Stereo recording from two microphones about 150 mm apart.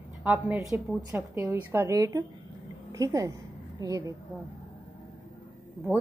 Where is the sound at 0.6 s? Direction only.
20° right (ahead or behind).